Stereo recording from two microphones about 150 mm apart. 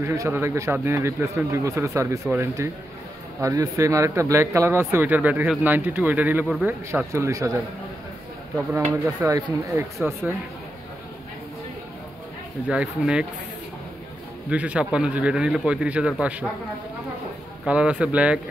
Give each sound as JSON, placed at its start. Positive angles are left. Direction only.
{"t": 0.0, "sound": "speech", "side_deg": -20}
{"t": 8.7, "sound": "speech", "side_deg": -20}
{"t": 12.6, "sound": "speech", "side_deg": -10}
{"t": 14.5, "sound": "speech", "side_deg": -10}
{"t": 17.6, "sound": "speech", "side_deg": -10}